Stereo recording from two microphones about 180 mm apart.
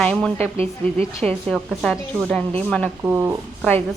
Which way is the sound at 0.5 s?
35° right (ahead or behind).